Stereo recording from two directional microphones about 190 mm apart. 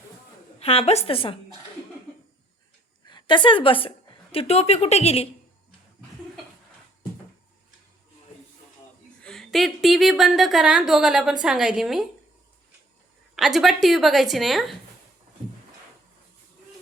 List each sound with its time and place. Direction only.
0.6 s a woman's voice: 30° left (ahead or behind)
3.1 s a woman's voice: 25° left (ahead or behind)
9.2 s a woman's voice: centre (ahead or behind)
13.3 s a woman's voice: centre (ahead or behind)